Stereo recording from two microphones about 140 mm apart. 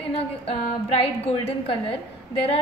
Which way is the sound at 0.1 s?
45° left (ahead or behind).